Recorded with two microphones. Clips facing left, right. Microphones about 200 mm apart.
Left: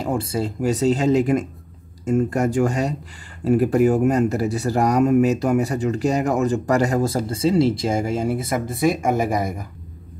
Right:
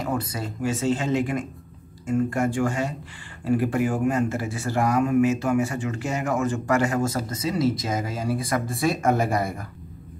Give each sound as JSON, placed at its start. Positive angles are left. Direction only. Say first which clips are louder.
{"t": 0.0, "sound": "speech", "louder": "left 5 dB", "side_deg": 30}